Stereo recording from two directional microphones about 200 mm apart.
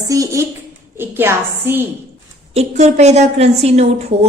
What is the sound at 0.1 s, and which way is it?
A woman's voice, 15° right (ahead or behind).